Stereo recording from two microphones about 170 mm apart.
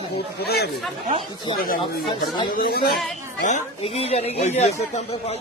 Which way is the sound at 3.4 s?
40° left (ahead or behind).